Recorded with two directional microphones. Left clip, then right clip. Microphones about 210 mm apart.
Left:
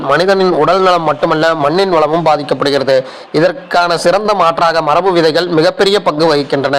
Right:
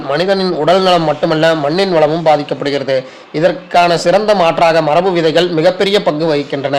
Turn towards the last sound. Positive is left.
turn(degrees=15)  # may be behind; listen again after turning